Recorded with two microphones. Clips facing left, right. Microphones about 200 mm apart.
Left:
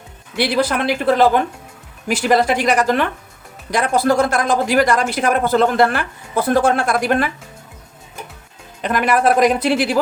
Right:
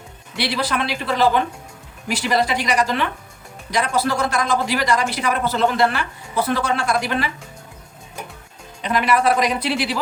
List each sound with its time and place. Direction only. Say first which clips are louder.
0.3 s speech: left 5 dB; 50° left (ahead or behind)
8.8 s speech: left 2 dB; 50° left (ahead or behind)